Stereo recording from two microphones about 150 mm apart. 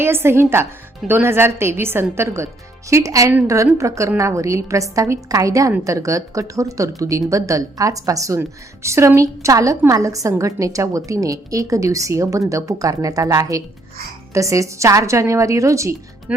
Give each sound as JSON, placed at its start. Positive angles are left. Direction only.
{"t": 0.0, "sound": "a woman's voice", "side_deg": -15}